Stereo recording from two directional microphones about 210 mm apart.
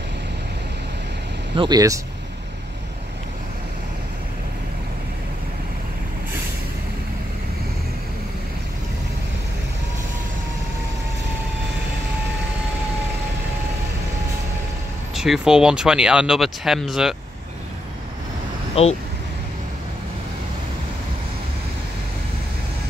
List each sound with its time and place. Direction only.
1.5 s speech: 20° right (ahead or behind)
15.1 s speech: centre (ahead or behind)
18.8 s speech: 30° left (ahead or behind)